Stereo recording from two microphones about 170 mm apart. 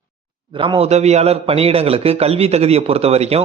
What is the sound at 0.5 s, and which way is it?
A man's voice, 30° right (ahead or behind).